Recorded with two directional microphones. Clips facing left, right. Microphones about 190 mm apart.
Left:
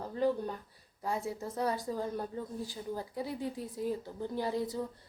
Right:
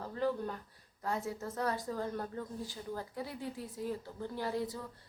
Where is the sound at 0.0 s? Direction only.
15° left (ahead or behind).